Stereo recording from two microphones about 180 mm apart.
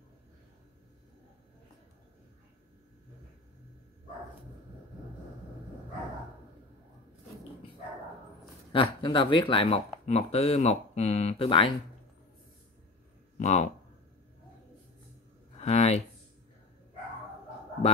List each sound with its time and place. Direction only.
8.7 s speech: 25° left (ahead or behind)
13.4 s speech: 40° left (ahead or behind)
15.6 s speech: 35° left (ahead or behind)